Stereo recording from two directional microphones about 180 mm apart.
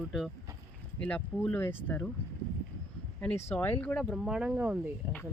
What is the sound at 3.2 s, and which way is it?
Speech, 15° left (ahead or behind).